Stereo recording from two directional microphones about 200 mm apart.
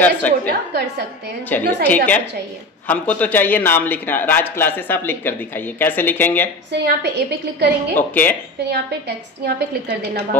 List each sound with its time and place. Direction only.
0.0 s a man's voice: 10° left (ahead or behind)
1.5 s a man's voice: 10° left (ahead or behind)
6.7 s a woman's voice: 55° right (ahead or behind)
7.9 s a man's voice: 10° left (ahead or behind)
9.4 s a woman's voice: 55° right (ahead or behind)